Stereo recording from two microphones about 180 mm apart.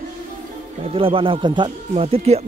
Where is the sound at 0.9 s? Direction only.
30° right (ahead or behind).